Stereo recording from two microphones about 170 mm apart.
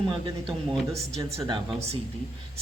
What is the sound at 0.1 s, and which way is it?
A man's voice, 30° right (ahead or behind).